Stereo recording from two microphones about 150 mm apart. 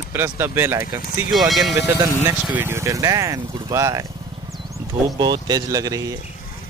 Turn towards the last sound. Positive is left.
turn(degrees=-25)  # may be behind; listen again after turning